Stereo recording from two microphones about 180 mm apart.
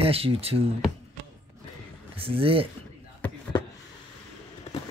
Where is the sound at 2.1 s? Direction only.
30° right (ahead or behind).